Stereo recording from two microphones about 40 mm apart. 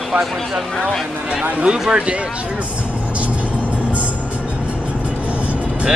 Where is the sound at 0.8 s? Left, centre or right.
Centre.